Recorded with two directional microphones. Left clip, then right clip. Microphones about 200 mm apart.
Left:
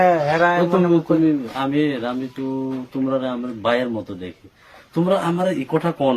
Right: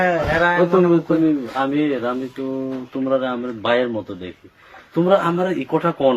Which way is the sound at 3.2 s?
50° left (ahead or behind).